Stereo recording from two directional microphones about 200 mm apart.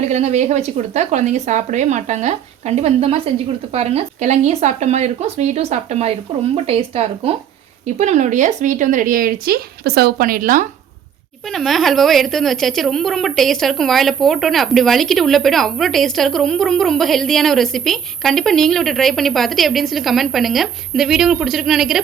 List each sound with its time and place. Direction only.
0.0 s speech: 35° right (ahead or behind)
11.4 s a woman's voice: centre (ahead or behind)